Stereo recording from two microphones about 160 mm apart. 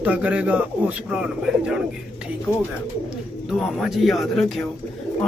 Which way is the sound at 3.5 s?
Centre (ahead or behind).